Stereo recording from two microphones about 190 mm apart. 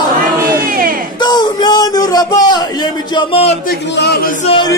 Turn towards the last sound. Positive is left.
turn(degrees=30)  # may be behind; listen again after turning